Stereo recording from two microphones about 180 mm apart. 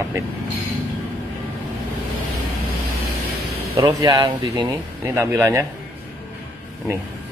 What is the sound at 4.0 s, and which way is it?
Speech, 20° right (ahead or behind).